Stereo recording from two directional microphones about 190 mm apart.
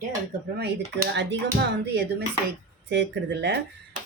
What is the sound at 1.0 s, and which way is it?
Speech, 65° right (ahead or behind).